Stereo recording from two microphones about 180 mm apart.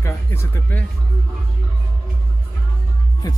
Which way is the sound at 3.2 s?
20° left (ahead or behind).